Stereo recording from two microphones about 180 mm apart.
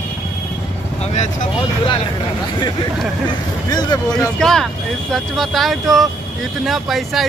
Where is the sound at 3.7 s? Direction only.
20° left (ahead or behind).